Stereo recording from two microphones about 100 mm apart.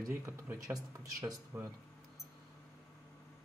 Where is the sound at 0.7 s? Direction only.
40° right (ahead or behind).